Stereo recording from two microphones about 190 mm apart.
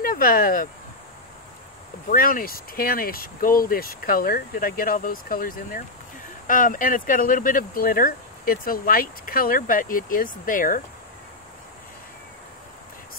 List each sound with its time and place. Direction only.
0.0 s speech: 50° left (ahead or behind)
2.0 s speech: 45° left (ahead or behind)